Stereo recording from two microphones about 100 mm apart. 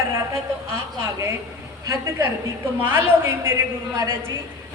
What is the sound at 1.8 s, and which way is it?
Speech, 35° right (ahead or behind).